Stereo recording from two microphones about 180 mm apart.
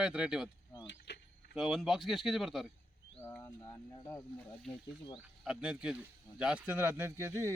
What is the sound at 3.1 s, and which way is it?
Speech, 10° left (ahead or behind).